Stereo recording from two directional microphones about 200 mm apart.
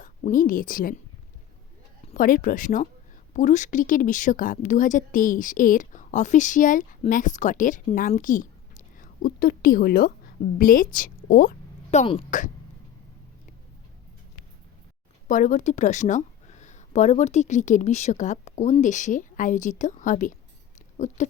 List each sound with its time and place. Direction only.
0.0 s a woman's voice: 40° left (ahead or behind)
2.1 s a woman's voice: 40° left (ahead or behind)
15.3 s speech: 40° left (ahead or behind)
20.7 s a sound: 35° left (ahead or behind)